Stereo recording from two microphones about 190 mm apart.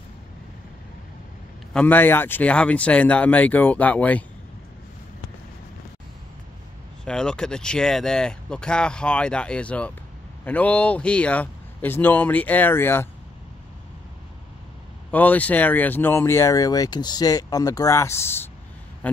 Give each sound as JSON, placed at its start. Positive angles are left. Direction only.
{"t": 1.7, "sound": "speech", "side_deg": 5}
{"t": 7.1, "sound": "speech", "side_deg": 5}
{"t": 15.0, "sound": "speech", "side_deg": 10}